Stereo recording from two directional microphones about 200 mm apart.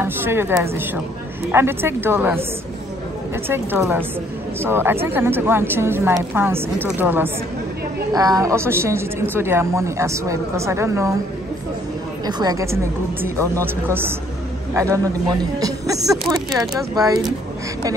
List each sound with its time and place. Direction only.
0.0 s a woman's voice: 10° right (ahead or behind)
3.4 s a woman's voice: 10° right (ahead or behind)
12.3 s a woman's voice: 20° right (ahead or behind)